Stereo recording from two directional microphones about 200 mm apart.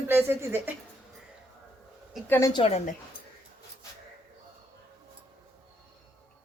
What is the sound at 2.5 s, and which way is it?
Speech, 25° left (ahead or behind).